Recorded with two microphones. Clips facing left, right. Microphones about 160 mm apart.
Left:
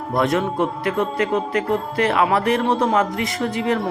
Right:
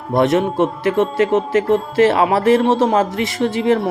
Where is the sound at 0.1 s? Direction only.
25° right (ahead or behind).